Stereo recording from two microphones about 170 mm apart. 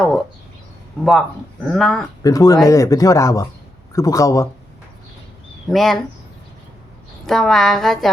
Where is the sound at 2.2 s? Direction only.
20° left (ahead or behind).